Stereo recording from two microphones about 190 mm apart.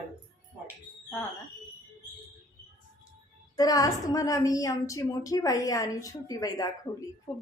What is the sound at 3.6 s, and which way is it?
A woman's voice, 20° left (ahead or behind).